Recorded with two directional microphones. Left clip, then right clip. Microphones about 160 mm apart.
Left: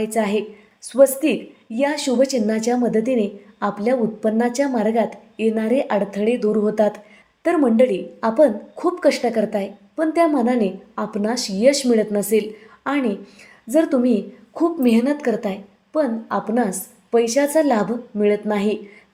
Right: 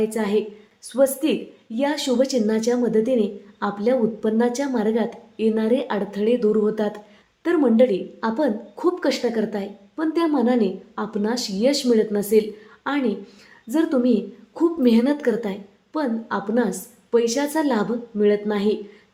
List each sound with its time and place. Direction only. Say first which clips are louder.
0.0 s a woman's voice: left 1 dB; 20° left (ahead or behind)